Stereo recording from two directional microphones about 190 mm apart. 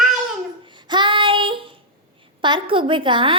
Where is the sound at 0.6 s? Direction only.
25° right (ahead or behind).